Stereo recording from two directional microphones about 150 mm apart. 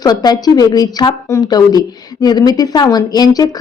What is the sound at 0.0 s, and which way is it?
A woman's voice, 25° left (ahead or behind).